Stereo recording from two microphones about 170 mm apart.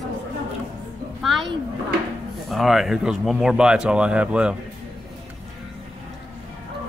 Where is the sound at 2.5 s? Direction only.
Centre (ahead or behind).